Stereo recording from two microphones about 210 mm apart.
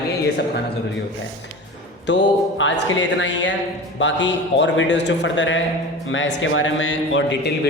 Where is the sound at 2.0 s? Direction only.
60° left (ahead or behind).